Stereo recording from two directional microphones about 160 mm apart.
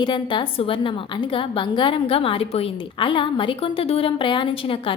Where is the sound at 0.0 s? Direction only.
30° left (ahead or behind).